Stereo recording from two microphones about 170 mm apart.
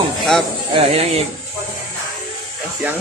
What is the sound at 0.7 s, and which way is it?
Speech, 35° right (ahead or behind).